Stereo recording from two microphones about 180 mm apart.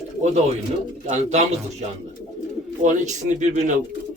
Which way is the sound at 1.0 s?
40° right (ahead or behind).